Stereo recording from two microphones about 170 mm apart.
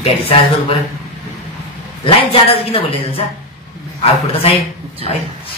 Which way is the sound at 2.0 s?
30° left (ahead or behind).